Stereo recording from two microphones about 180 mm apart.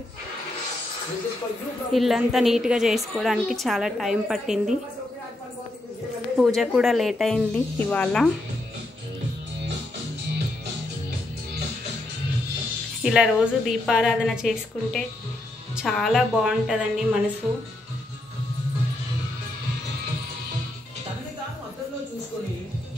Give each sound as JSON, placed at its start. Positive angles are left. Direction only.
{"t": 1.9, "sound": "a woman's voice", "side_deg": 0}
{"t": 6.3, "sound": "a woman's voice", "side_deg": 0}
{"t": 13.0, "sound": "a woman's voice", "side_deg": -5}